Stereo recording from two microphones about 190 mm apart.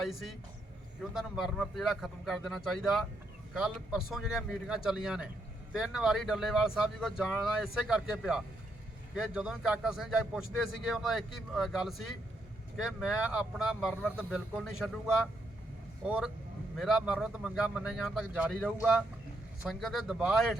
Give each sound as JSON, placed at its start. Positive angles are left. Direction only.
{"t": 1.1, "sound": "speech", "side_deg": 0}